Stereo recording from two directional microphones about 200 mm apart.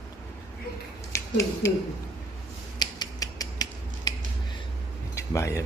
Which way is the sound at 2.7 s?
20° left (ahead or behind).